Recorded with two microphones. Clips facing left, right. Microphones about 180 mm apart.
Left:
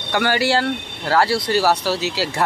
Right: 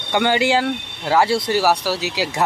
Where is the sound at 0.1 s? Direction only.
20° right (ahead or behind).